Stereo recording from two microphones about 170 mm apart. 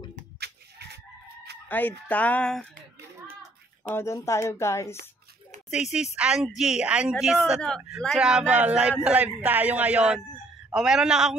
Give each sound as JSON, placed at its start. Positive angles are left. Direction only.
{"t": 0.4, "sound": "chicken", "side_deg": -75}
{"t": 1.7, "sound": "speech", "side_deg": 10}
{"t": 3.9, "sound": "speech", "side_deg": 15}
{"t": 5.7, "sound": "a man's voice", "side_deg": -5}